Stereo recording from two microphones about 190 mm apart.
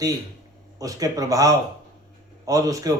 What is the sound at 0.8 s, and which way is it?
Speech, 20° right (ahead or behind).